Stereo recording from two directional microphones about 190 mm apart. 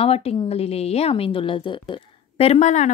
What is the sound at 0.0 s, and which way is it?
A woman's voice, 30° left (ahead or behind).